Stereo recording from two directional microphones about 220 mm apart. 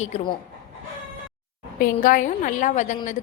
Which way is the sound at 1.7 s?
40° left (ahead or behind).